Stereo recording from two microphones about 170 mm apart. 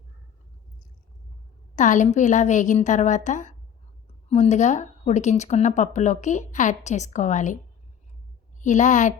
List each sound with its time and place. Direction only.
1.7 s speech: 45° left (ahead or behind)
8.6 s speech: 45° left (ahead or behind)